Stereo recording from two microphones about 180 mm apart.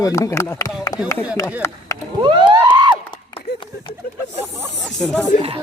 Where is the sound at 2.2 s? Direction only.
25° right (ahead or behind).